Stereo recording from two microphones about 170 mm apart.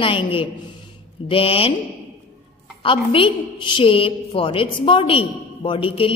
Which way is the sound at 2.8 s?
30° left (ahead or behind).